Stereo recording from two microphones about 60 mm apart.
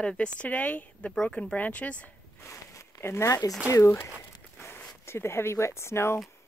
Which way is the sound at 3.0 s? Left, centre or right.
Left.